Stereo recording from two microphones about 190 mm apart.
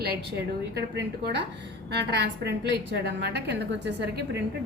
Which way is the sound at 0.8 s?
65° right (ahead or behind).